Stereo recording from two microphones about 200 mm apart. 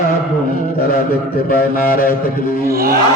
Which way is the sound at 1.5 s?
45° left (ahead or behind).